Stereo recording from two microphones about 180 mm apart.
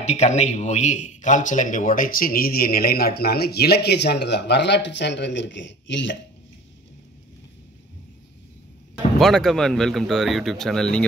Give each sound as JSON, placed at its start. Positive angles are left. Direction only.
{"t": 0.0, "sound": "a man's voice", "side_deg": 40}
{"t": 9.2, "sound": "speech", "side_deg": 0}